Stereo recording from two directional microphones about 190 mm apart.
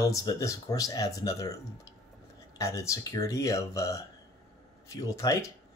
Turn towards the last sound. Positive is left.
turn(degrees=15)  # may be behind; listen again after turning